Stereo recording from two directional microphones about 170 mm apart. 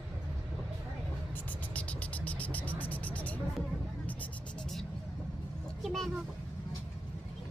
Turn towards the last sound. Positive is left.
turn(degrees=0)  # may be behind; listen again after turning